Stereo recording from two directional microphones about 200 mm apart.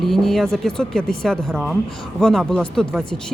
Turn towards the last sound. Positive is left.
turn(degrees=5)  # may be behind; listen again after turning